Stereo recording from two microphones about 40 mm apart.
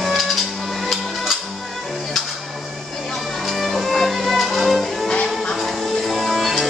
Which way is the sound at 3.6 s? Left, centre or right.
Centre.